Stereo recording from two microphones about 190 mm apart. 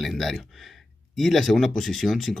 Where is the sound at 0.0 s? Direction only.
Centre (ahead or behind).